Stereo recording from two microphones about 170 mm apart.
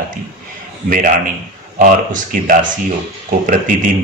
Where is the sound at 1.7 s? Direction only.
55° right (ahead or behind).